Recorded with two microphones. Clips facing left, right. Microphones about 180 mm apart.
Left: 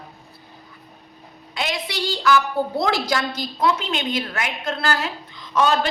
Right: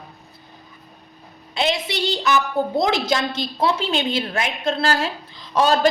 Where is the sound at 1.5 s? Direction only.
25° right (ahead or behind).